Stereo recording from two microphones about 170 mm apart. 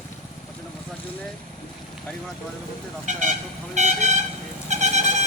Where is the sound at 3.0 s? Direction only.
45° right (ahead or behind).